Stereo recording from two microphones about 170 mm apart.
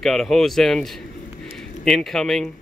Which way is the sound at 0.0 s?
Centre (ahead or behind).